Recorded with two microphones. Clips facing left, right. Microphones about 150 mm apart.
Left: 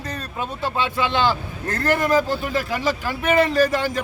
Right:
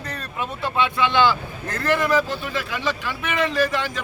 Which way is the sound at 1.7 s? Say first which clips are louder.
Left 1 dB; 45° left (ahead or behind).